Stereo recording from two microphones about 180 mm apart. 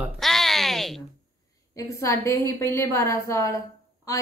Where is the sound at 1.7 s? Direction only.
15° left (ahead or behind).